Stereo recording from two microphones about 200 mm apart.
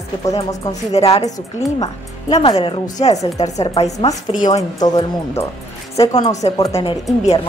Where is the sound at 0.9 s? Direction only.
30° left (ahead or behind).